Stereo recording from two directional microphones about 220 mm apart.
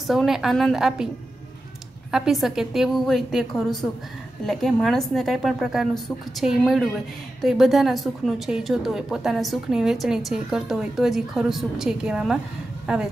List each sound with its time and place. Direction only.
0.0 s a woman's voice: centre (ahead or behind)
2.0 s a woman's voice: centre (ahead or behind)